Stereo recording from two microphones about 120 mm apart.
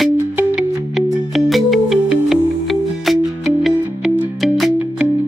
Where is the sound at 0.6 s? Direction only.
Centre (ahead or behind).